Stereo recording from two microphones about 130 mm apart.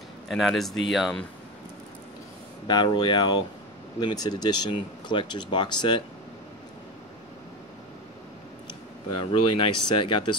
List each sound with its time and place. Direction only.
0.3 s speech: centre (ahead or behind)
2.6 s speech: 35° left (ahead or behind)
9.2 s speech: 40° left (ahead or behind)